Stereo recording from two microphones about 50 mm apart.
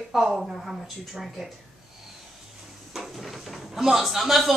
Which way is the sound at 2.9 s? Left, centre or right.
Centre.